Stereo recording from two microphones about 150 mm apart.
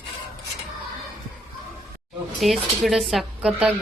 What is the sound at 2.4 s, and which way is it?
A woman's voice, centre (ahead or behind).